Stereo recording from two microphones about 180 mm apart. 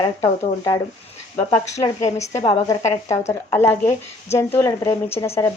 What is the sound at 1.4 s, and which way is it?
Speech, 35° left (ahead or behind).